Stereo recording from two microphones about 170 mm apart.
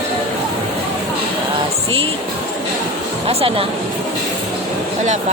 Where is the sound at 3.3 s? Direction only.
35° right (ahead or behind).